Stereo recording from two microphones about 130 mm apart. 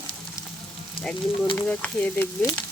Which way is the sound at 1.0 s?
45° left (ahead or behind).